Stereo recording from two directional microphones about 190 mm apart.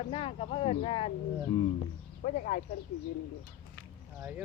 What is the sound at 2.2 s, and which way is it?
Speech, 45° left (ahead or behind).